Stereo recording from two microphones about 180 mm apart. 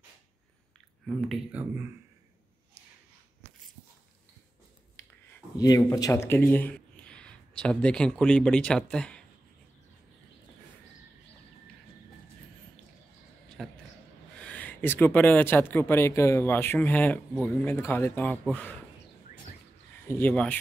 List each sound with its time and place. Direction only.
1.0 s speech: 5° right (ahead or behind)
5.0 s a sound: 15° left (ahead or behind)
5.6 s speech: 20° left (ahead or behind)
13.6 s a sound: centre (ahead or behind)
14.4 s speech: 10° left (ahead or behind)
20.1 s speech: 10° left (ahead or behind)